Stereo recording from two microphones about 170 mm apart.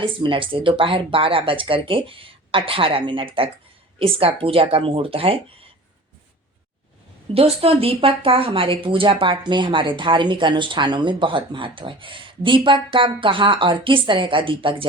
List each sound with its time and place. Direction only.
0.0 s speech: 30° right (ahead or behind)
7.3 s speech: 35° right (ahead or behind)